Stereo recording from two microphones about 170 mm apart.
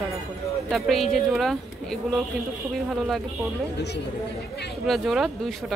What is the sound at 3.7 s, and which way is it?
Speech, 80° left.